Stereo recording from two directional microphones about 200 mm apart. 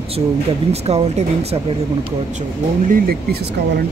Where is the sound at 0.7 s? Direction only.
30° right (ahead or behind).